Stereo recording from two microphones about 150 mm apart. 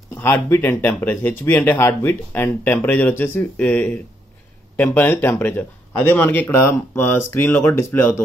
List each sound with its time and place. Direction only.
0.1 s speech: 15° left (ahead or behind)